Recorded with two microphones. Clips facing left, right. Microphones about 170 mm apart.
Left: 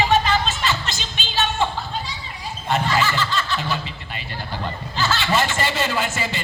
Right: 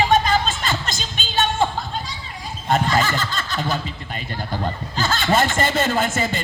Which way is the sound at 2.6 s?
45° right (ahead or behind).